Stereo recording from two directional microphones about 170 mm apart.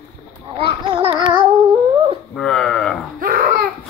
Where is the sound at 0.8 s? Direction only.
30° right (ahead or behind).